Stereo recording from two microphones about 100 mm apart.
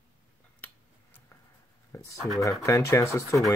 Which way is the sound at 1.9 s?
30° left (ahead or behind).